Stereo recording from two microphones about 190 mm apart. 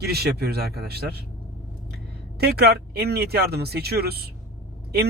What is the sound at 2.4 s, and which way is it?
Speech, 55° right (ahead or behind).